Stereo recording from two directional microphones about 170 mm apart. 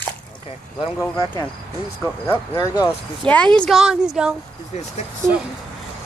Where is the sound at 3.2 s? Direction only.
5° left (ahead or behind).